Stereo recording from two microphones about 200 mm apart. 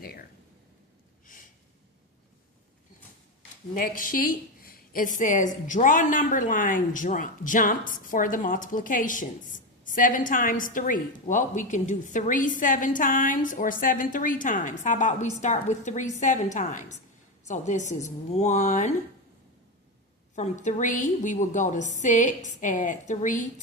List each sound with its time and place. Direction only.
1.3 s a sound: 40° left (ahead or behind)
3.8 s a woman's voice: 45° left (ahead or behind)
20.3 s a woman's voice: 35° left (ahead or behind)